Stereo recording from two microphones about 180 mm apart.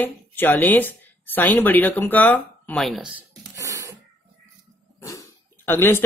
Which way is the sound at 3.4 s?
15° right (ahead or behind).